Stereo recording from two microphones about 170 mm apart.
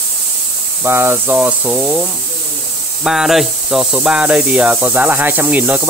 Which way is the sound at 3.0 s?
Centre (ahead or behind).